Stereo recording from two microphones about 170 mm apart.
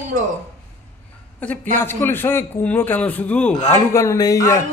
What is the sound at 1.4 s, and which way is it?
A man's voice, 10° left (ahead or behind).